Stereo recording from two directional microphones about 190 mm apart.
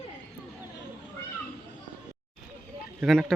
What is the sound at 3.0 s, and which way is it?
Speech, centre (ahead or behind).